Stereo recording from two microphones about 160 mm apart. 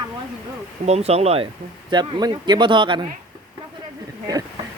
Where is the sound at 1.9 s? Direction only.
25° right (ahead or behind).